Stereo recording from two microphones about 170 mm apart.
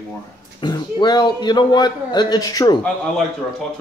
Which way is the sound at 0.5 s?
25° left (ahead or behind).